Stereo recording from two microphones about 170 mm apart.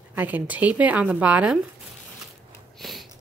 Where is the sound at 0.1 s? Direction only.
10° right (ahead or behind).